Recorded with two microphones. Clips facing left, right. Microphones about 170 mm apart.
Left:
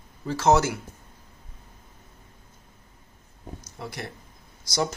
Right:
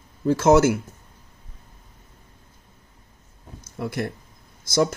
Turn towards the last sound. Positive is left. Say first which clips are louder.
# right 6 dB
turn(degrees=-50)  # may be behind; listen again after turning